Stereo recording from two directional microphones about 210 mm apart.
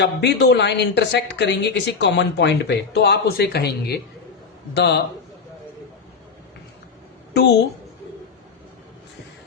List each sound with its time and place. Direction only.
0.0 s a woman's voice: 55° left (ahead or behind)